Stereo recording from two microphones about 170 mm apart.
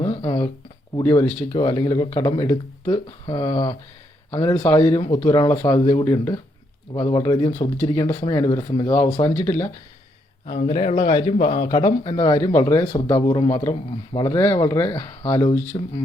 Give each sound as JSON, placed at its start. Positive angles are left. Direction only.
{"t": 0.1, "sound": "a sound", "side_deg": 30}
{"t": 1.0, "sound": "speech", "side_deg": 10}
{"t": 1.5, "sound": "speech", "side_deg": 25}
{"t": 4.9, "sound": "speech", "side_deg": 25}
{"t": 10.4, "sound": "speech", "side_deg": 30}